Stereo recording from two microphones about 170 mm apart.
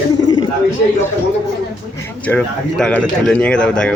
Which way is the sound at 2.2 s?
5° left (ahead or behind).